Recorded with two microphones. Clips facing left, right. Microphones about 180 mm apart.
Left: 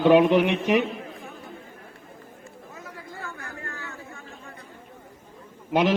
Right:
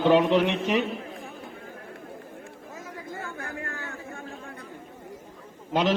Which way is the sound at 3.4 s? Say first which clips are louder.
Right 3 dB; 55° right (ahead or behind).